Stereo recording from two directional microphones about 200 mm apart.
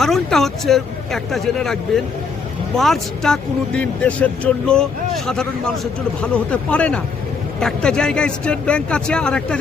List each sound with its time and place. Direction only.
0.0 s speech: centre (ahead or behind)